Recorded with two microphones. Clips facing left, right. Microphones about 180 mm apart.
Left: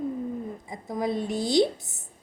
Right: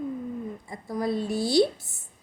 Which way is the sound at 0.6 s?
20° left (ahead or behind).